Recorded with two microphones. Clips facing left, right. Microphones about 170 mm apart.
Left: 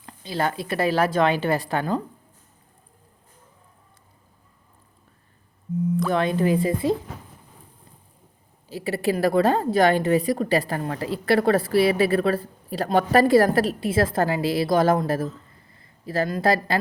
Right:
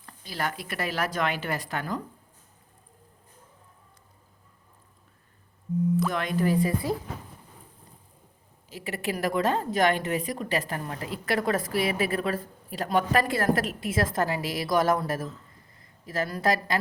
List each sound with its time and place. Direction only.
0.0 s a woman's voice: 25° left (ahead or behind)
6.1 s a woman's voice: 30° left (ahead or behind)
8.7 s speech: 35° left (ahead or behind)